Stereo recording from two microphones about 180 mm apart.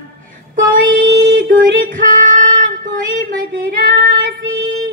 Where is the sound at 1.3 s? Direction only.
50° right (ahead or behind).